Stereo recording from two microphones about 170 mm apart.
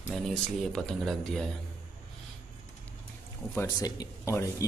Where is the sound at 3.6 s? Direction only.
20° left (ahead or behind).